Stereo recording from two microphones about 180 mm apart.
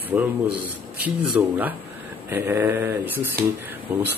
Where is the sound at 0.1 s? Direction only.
10° right (ahead or behind).